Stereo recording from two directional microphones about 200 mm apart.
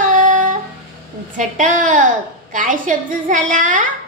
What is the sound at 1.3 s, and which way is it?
A woman's voice, 40° right (ahead or behind).